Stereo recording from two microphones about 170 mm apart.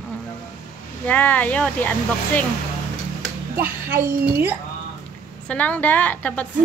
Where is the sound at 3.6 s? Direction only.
10° right (ahead or behind).